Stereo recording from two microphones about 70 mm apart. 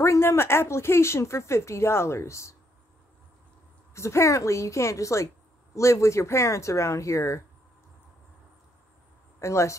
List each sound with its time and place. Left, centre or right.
0.0 s speech: left
3.9 s speech: left
9.4 s speech: left